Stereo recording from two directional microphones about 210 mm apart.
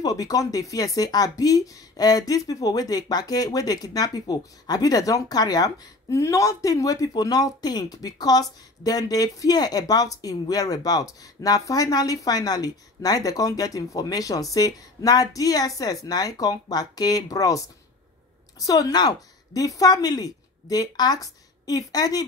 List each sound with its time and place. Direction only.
0.0 s a woman's voice: 15° left (ahead or behind)